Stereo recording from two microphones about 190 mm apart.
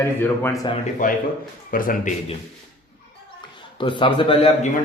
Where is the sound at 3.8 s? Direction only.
25° left (ahead or behind).